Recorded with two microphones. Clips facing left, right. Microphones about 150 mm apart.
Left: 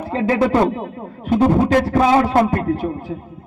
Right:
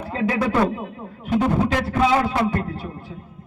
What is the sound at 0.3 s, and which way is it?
A man's voice, 30° left (ahead or behind).